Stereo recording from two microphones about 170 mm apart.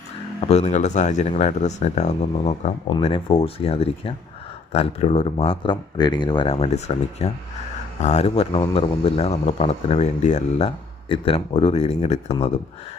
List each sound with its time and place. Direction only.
0.4 s speech: 40° left (ahead or behind)